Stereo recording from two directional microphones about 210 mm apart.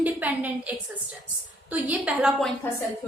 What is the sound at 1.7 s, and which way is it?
Speech, 5° right (ahead or behind).